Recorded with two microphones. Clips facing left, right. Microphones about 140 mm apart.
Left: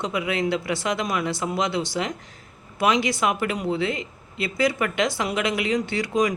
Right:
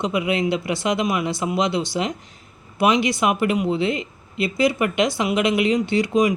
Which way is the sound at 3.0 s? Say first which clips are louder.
Right 4 dB; 15° right (ahead or behind).